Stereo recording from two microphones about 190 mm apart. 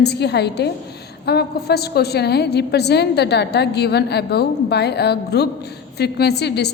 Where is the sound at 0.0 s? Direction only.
60° left (ahead or behind).